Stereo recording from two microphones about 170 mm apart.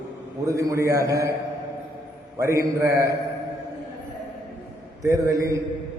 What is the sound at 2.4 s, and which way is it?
Speech, 20° right (ahead or behind).